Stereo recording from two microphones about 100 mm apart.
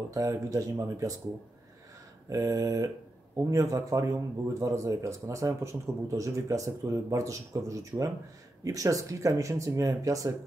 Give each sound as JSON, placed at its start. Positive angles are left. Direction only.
{"t": 0.1, "sound": "speech", "side_deg": -35}
{"t": 2.2, "sound": "speech", "side_deg": -35}